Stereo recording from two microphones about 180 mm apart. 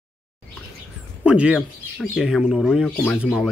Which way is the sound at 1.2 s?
5° right (ahead or behind).